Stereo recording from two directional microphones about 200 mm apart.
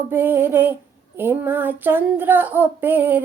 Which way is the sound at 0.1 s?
10° right (ahead or behind).